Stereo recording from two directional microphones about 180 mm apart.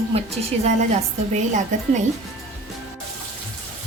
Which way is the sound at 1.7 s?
45° right (ahead or behind).